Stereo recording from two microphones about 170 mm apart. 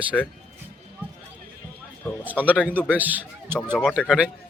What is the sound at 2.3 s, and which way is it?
A man's voice, 10° right (ahead or behind).